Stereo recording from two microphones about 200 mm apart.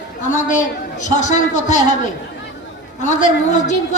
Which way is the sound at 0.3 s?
40° left (ahead or behind).